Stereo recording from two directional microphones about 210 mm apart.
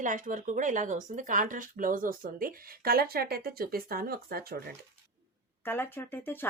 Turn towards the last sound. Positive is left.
turn(degrees=10)  # may be behind; listen again after turning